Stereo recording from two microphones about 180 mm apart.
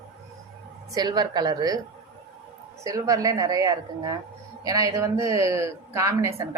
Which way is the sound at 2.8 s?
20° right (ahead or behind).